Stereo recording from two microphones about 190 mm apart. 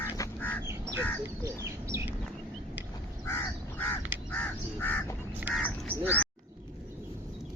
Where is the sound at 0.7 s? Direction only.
15° right (ahead or behind).